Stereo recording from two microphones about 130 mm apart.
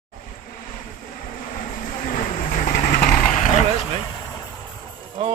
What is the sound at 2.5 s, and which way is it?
Vehicle, 90° left.